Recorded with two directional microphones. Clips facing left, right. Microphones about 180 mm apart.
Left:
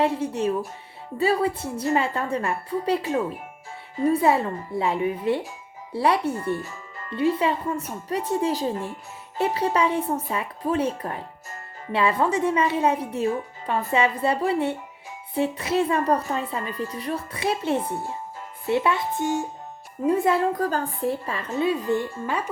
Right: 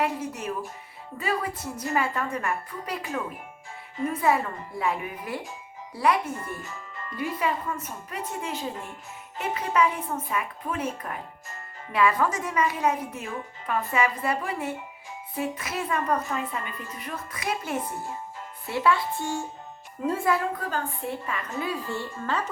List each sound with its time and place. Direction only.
0.0 s a woman's voice: 30° left (ahead or behind)
20.5 s a woman's voice: 35° left (ahead or behind); by 22.4 s 15° left (ahead or behind)